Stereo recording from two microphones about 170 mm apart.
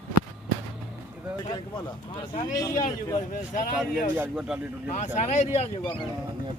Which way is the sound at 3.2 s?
50° left (ahead or behind).